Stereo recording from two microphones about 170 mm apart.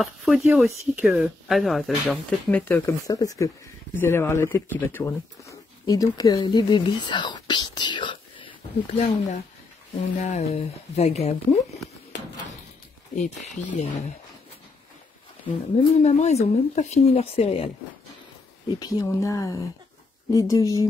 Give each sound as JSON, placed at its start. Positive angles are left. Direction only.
{"t": 0.0, "sound": "speech", "side_deg": 0}
{"t": 8.9, "sound": "speech", "side_deg": 40}
{"t": 13.1, "sound": "speech", "side_deg": 45}
{"t": 15.9, "sound": "speech", "side_deg": 40}
{"t": 18.8, "sound": "speech", "side_deg": 20}